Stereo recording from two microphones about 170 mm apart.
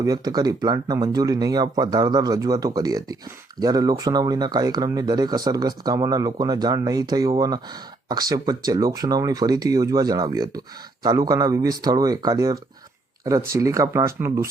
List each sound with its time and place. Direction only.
0.0 s speech: 20° right (ahead or behind)